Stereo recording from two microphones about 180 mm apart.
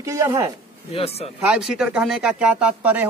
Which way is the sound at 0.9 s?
35° left (ahead or behind).